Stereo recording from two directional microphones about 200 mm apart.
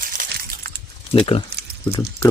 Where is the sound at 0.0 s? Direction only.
45° right (ahead or behind).